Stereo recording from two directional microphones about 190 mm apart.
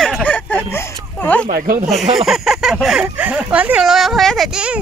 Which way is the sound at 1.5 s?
45° right (ahead or behind).